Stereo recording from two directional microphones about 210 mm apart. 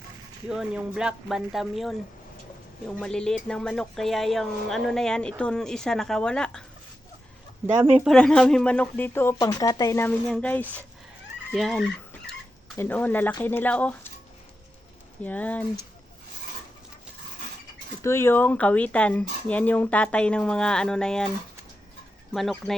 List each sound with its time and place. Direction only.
0.4 s speech: 5° right (ahead or behind)
3.0 s speech: 5° left (ahead or behind)
8.0 s speech: 5° left (ahead or behind)
11.5 s chicken: centre (ahead or behind)
12.7 s speech: 10° left (ahead or behind)
15.2 s speech: 5° left (ahead or behind)
18.0 s speech: 10° left (ahead or behind)
22.3 s speech: centre (ahead or behind)